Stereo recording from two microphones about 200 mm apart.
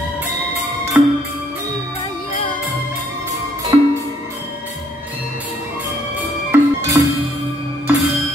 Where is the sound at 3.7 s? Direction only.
20° right (ahead or behind).